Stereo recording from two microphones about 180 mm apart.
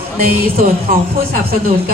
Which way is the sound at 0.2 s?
55° right (ahead or behind).